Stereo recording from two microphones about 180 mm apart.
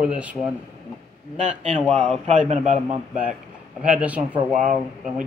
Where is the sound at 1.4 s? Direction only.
40° right (ahead or behind).